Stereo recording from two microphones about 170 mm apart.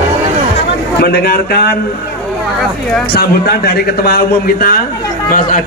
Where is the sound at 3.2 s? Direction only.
65° left (ahead or behind).